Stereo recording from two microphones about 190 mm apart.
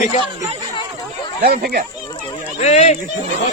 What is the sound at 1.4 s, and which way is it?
Speech, 55° right (ahead or behind).